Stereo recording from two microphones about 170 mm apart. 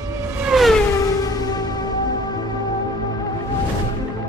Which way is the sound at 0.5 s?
Centre (ahead or behind).